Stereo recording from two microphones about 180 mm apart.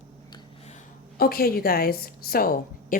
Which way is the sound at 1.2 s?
55° left (ahead or behind).